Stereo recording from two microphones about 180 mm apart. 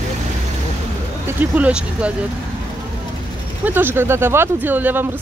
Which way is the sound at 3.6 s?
10° right (ahead or behind).